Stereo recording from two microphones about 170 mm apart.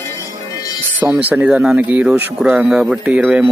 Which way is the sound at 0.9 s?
15° right (ahead or behind).